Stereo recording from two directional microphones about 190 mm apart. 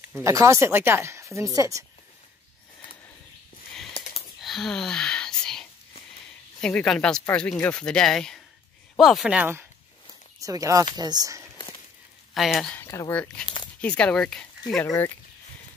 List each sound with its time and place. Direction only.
0.2 s speech: 15° right (ahead or behind)
4.4 s whispering: centre (ahead or behind)
6.6 s speech: 5° left (ahead or behind); by 11.4 s 20° right (ahead or behind)
12.4 s speech: centre (ahead or behind)
12.7 s speech: 15° left (ahead or behind)